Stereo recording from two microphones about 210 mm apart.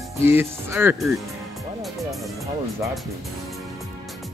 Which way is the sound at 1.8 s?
Centre (ahead or behind).